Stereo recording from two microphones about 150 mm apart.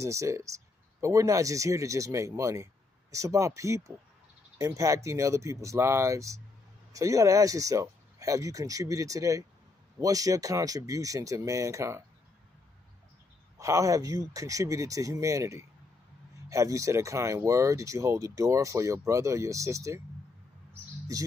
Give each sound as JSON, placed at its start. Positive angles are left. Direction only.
{"t": 0.0, "sound": "speech", "side_deg": -20}
{"t": 13.6, "sound": "speech", "side_deg": -20}